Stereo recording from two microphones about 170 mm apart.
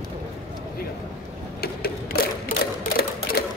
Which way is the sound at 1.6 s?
65° left (ahead or behind).